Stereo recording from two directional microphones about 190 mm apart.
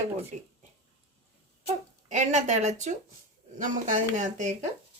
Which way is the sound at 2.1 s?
40° right (ahead or behind).